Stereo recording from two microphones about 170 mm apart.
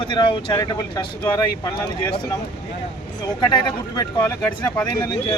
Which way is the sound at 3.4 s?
25° left (ahead or behind).